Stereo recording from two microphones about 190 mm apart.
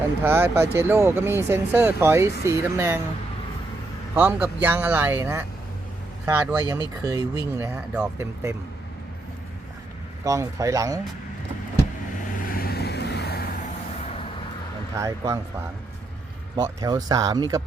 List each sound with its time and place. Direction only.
0.2 s speech: 10° right (ahead or behind)
4.1 s speech: 10° right (ahead or behind)
10.2 s speech: 15° right (ahead or behind)
12.4 s vehicle: 50° left (ahead or behind)
14.9 s speech: 15° right (ahead or behind)
16.6 s speech: 20° right (ahead or behind)